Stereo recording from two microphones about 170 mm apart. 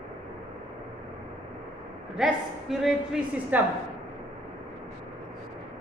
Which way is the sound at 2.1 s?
Centre (ahead or behind).